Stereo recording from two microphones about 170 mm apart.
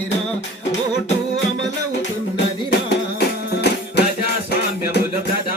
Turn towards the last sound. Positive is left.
turn(degrees=75)  # may be behind; listen again after turning